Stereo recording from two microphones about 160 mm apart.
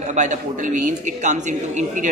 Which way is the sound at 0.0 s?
50° right (ahead or behind).